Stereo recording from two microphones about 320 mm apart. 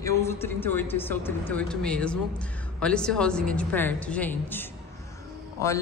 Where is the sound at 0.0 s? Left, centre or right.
Centre.